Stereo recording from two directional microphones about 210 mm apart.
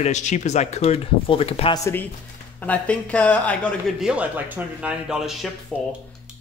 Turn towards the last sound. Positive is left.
turn(degrees=5)  # may be behind; listen again after turning